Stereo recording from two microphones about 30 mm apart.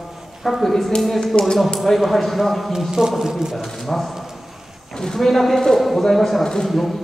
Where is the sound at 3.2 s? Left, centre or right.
Centre.